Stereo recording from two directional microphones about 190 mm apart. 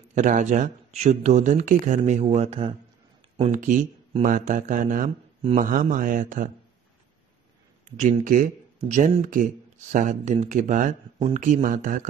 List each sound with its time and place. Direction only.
0.1 s speech: 40° right (ahead or behind)
3.5 s speech: 45° right (ahead or behind)
8.0 s speech: 45° right (ahead or behind)